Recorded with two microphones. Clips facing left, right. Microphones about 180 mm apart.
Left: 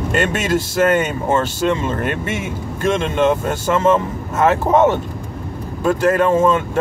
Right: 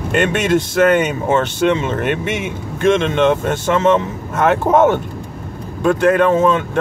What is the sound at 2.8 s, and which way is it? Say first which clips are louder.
Speech: right 3 dB; 5° left (ahead or behind).